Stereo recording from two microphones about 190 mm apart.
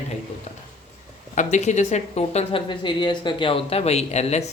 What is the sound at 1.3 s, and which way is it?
A woman's voice, 40° left (ahead or behind).